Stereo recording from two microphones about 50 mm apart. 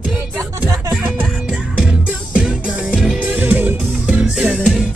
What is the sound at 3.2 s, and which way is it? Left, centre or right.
Music, right.